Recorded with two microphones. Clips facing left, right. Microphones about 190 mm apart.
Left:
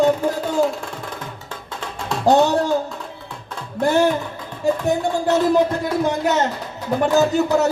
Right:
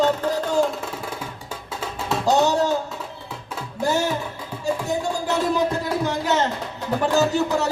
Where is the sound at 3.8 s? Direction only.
60° left (ahead or behind).